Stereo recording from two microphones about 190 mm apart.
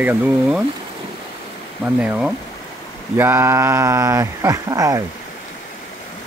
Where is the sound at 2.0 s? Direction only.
5° right (ahead or behind).